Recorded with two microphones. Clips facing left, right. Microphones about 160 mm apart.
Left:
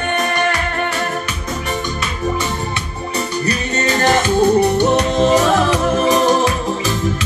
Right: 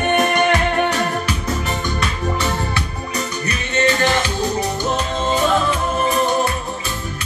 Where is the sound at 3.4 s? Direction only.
40° left (ahead or behind); by 6.5 s 90° left.